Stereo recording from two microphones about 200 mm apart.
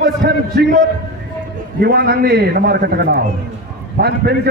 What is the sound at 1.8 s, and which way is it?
A man's voice, 55° right (ahead or behind).